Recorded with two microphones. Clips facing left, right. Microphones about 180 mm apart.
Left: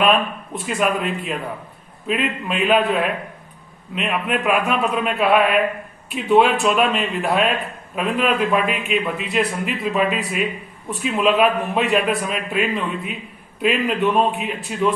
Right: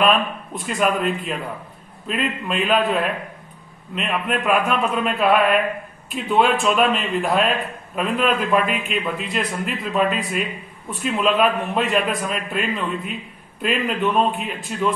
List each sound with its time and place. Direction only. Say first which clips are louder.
0.6 s a man's voice: even; centre (ahead or behind)